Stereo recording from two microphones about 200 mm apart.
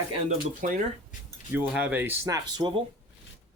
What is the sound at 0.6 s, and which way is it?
Speech, 40° right (ahead or behind).